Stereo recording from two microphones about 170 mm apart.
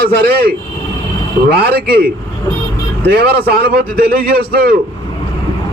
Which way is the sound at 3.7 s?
60° right (ahead or behind).